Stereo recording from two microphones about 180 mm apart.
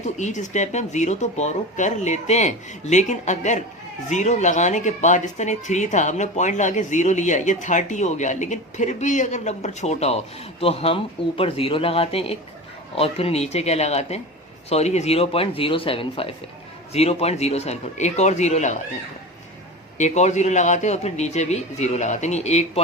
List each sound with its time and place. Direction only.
0.2 s speech: 40° left (ahead or behind)
20.0 s speech: 40° left (ahead or behind)